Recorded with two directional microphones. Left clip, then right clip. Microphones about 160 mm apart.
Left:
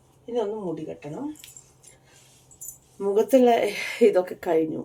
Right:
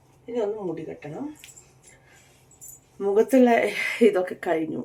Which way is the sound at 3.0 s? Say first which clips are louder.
Even; 15° right (ahead or behind).